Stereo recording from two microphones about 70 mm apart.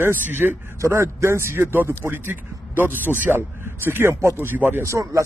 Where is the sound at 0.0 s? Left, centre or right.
Right.